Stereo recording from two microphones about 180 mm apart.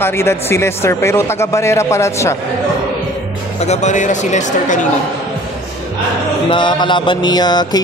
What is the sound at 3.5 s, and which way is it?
Speech, 40° left (ahead or behind).